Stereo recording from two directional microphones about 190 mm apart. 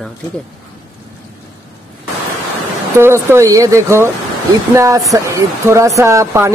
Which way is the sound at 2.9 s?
15° right (ahead or behind).